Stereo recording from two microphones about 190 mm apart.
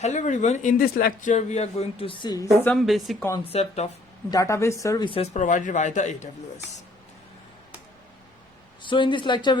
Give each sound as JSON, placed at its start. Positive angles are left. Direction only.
{"t": 0.0, "sound": "a man's voice", "side_deg": 40}
{"t": 2.6, "sound": "a woman's voice", "side_deg": 0}
{"t": 3.5, "sound": "a man's voice", "side_deg": 35}
{"t": 4.3, "sound": "a man's voice", "side_deg": 15}
{"t": 8.8, "sound": "speech", "side_deg": 25}